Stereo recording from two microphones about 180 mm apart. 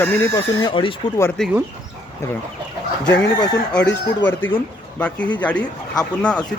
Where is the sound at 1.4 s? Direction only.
5° left (ahead or behind).